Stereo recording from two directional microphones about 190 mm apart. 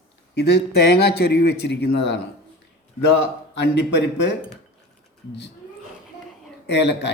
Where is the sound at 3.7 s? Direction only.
65° left (ahead or behind).